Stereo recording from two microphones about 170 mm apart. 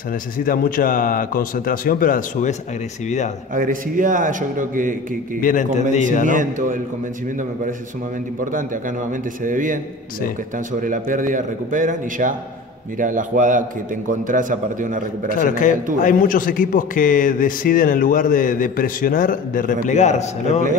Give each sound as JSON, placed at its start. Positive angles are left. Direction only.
{"t": 0.1, "sound": "speech", "side_deg": 55}
{"t": 3.5, "sound": "a man's voice", "side_deg": -50}
{"t": 5.4, "sound": "a man's voice", "side_deg": 50}
{"t": 6.2, "sound": "a man's voice", "side_deg": -50}
{"t": 8.5, "sound": "a man's voice", "side_deg": -50}
{"t": 10.8, "sound": "a man's voice", "side_deg": -50}
{"t": 15.4, "sound": "a man's voice", "side_deg": 50}